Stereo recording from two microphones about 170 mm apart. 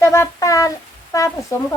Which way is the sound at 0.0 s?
15° left (ahead or behind).